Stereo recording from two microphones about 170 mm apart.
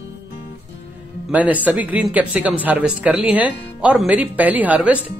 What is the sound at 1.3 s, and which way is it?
A man's voice, 10° right (ahead or behind).